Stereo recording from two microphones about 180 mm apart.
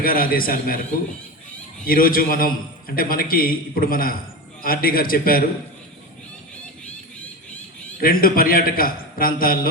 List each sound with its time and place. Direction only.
0.0 s a man's voice: 55° left (ahead or behind)
1.9 s a man's voice: 50° left (ahead or behind)
8.0 s a man's voice: 55° left (ahead or behind)